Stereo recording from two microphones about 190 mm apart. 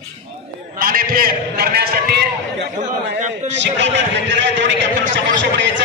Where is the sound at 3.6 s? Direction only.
70° right (ahead or behind).